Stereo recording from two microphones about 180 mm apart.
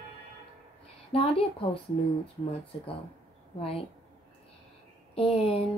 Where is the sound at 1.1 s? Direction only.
35° left (ahead or behind).